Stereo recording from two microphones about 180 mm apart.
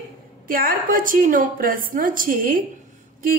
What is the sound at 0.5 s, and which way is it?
A woman's voice, 50° right (ahead or behind).